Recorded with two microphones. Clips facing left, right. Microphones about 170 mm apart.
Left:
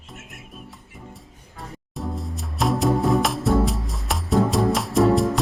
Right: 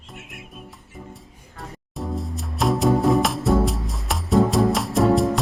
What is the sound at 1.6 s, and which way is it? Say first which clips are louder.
Music: even; centre (ahead or behind).